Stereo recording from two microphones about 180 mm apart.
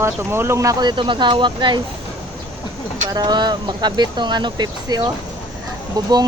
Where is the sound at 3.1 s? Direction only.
20° right (ahead or behind).